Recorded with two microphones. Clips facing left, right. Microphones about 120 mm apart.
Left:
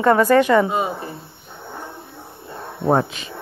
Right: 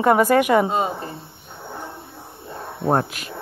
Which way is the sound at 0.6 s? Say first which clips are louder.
Even; 30° right (ahead or behind).